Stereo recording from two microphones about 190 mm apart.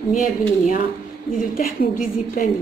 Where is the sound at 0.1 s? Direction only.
45° left (ahead or behind).